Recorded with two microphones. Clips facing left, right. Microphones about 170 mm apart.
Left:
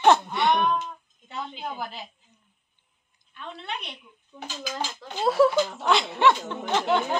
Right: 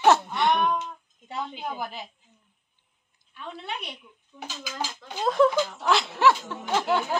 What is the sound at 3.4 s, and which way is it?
Speech, 10° right (ahead or behind).